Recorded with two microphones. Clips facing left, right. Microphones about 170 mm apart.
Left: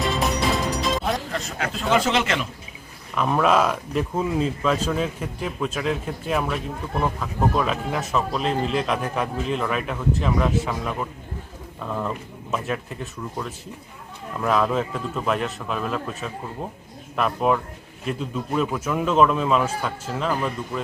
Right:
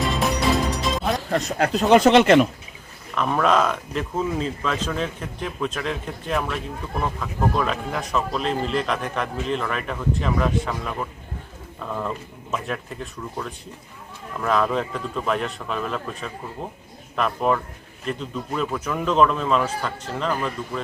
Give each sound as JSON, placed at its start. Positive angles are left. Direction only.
{"t": 0.0, "sound": "music", "side_deg": 0}
{"t": 1.3, "sound": "speech", "side_deg": -40}
{"t": 2.0, "sound": "speech", "side_deg": -55}
{"t": 3.2, "sound": "a man's voice", "side_deg": 5}